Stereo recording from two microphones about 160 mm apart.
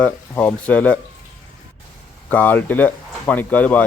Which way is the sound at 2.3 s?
10° left (ahead or behind).